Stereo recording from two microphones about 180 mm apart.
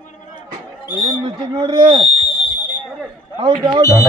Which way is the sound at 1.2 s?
25° right (ahead or behind).